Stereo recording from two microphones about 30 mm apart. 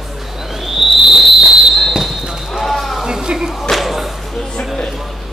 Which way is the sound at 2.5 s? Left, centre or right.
Centre.